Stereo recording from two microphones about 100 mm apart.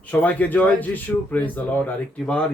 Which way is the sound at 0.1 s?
15° left (ahead or behind).